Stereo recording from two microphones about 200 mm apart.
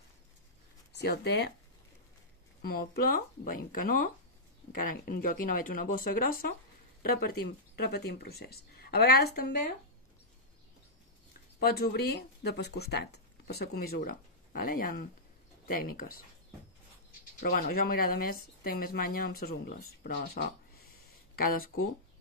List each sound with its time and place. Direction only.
0.9 s speech: 55° left (ahead or behind)
2.6 s speech: 50° left (ahead or behind)
11.6 s speech: 50° left (ahead or behind)
17.4 s speech: 50° left (ahead or behind)